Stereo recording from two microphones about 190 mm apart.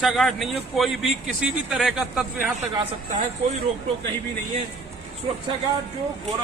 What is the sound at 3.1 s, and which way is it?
Speech, 40° right (ahead or behind).